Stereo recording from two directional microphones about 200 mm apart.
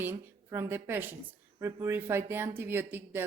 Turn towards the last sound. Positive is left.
turn(degrees=-10)  # may be behind; listen again after turning